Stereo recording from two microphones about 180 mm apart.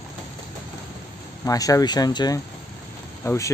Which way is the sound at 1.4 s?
20° left (ahead or behind).